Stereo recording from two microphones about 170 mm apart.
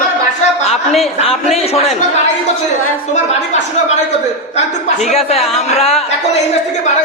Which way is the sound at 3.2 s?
40° left (ahead or behind).